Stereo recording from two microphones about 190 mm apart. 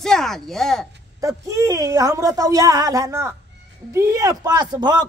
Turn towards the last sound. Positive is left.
turn(degrees=-20)  # may be behind; listen again after turning